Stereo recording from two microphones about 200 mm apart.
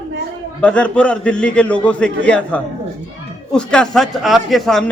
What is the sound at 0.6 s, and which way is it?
A man's voice, 5° left (ahead or behind).